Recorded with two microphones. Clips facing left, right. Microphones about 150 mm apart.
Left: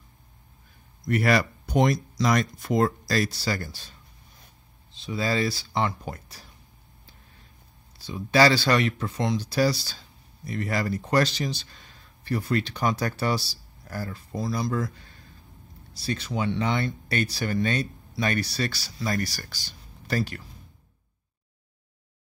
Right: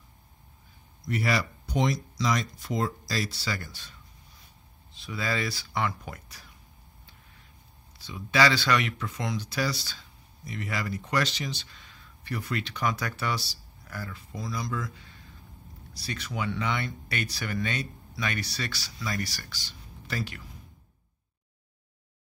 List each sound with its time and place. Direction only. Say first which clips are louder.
1.0 s speech: left 6 dB; 55° left (ahead or behind); by 3.9 s 35° left (ahead or behind)
4.9 s speech: left 5 dB; 30° left (ahead or behind)
8.0 s speech: left 4 dB; 35° left (ahead or behind)
16.0 s speech: left 5 dB; 30° left (ahead or behind)